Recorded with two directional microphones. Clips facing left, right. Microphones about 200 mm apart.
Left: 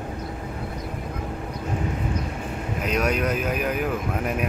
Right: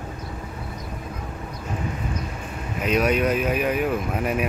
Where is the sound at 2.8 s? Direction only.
Centre (ahead or behind).